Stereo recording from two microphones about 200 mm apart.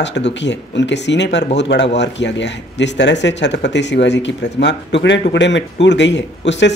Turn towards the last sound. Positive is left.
turn(degrees=60)  # may be behind; listen again after turning